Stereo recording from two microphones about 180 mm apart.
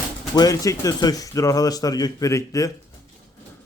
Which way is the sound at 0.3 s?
20° left (ahead or behind).